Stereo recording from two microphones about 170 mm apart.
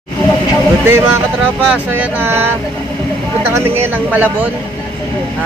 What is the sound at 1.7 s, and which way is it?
Speech, 10° right (ahead or behind).